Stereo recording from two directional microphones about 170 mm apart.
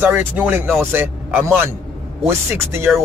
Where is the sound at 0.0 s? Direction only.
10° right (ahead or behind).